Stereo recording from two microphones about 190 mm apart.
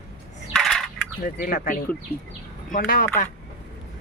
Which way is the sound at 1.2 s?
50° left (ahead or behind).